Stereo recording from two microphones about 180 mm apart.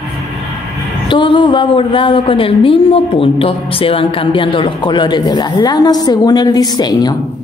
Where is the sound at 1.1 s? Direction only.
25° left (ahead or behind).